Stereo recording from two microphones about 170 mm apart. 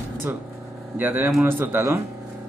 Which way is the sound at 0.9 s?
10° right (ahead or behind).